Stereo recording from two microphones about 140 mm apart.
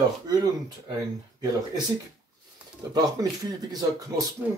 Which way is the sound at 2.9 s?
30° right (ahead or behind).